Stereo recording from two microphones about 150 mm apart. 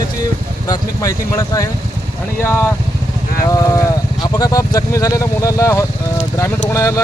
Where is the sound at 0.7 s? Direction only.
25° left (ahead or behind).